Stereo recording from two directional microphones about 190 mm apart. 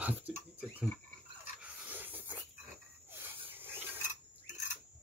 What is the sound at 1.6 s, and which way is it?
Dog, 10° right (ahead or behind).